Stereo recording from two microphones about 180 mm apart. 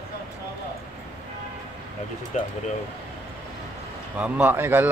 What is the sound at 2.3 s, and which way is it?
Speech, 40° left (ahead or behind).